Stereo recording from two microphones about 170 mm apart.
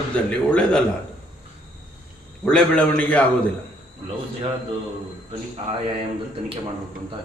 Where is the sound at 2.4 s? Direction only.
5° left (ahead or behind).